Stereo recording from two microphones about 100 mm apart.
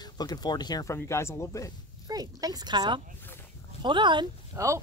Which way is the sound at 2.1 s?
40° right (ahead or behind).